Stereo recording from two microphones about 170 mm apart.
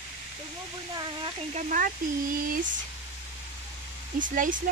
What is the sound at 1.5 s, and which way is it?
Speech, 50° right (ahead or behind).